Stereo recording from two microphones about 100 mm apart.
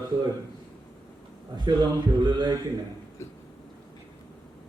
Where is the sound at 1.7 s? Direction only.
45° right (ahead or behind).